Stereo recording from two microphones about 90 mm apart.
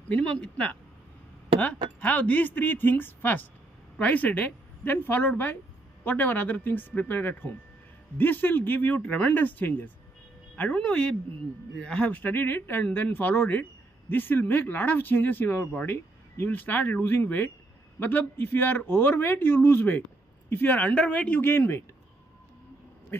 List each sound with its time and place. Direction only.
0.1 s speech: 10° left (ahead or behind)
2.0 s speech: 15° left (ahead or behind)